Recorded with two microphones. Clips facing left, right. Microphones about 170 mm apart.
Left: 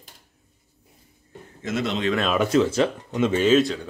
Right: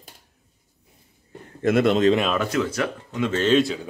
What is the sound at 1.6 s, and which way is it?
Speech, 60° right (ahead or behind).